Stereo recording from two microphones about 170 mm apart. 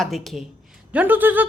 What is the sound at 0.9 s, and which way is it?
Speech, 10° right (ahead or behind).